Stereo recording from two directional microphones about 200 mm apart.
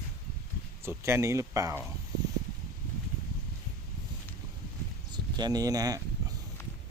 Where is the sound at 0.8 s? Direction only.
10° right (ahead or behind).